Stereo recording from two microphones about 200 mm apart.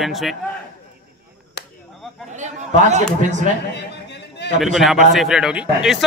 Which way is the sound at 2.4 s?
35° right (ahead or behind).